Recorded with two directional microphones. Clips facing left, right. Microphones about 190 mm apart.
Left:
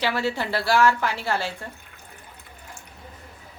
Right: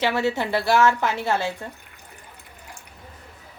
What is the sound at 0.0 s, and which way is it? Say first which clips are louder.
A woman's voice: right 3 dB; 20° right (ahead or behind).